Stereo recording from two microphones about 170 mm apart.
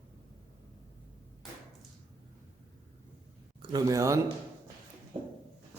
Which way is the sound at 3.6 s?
25° right (ahead or behind).